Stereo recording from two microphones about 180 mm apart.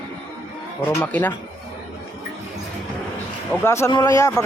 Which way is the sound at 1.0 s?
10° left (ahead or behind).